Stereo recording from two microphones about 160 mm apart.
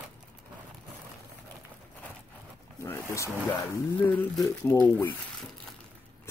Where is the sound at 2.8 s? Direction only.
15° left (ahead or behind).